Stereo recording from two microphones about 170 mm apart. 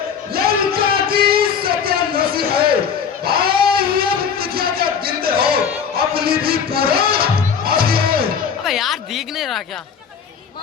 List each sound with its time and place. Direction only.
0.4 s music: 60° right (ahead or behind)
3.2 s a sound: 65° right (ahead or behind)
6.0 s music: 65° right (ahead or behind)
8.6 s a woman's voice: centre (ahead or behind)